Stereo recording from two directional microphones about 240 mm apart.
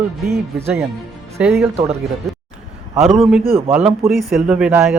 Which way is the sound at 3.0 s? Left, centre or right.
Centre.